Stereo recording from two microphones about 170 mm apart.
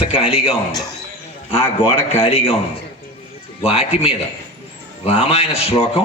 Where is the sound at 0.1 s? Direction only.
35° left (ahead or behind).